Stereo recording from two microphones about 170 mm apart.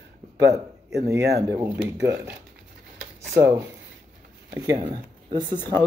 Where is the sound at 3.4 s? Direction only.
15° right (ahead or behind).